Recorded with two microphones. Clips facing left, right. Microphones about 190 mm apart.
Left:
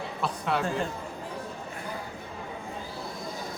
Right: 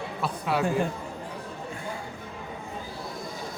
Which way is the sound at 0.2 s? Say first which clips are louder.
Right 1 dB; 5° right (ahead or behind).